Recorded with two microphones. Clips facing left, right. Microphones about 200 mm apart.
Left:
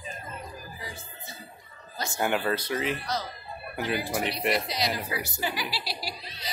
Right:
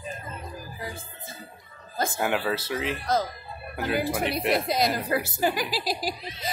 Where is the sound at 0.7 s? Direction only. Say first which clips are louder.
Right 4 dB; 50° right (ahead or behind).